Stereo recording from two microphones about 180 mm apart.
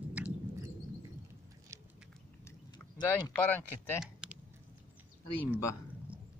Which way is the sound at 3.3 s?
10° left (ahead or behind).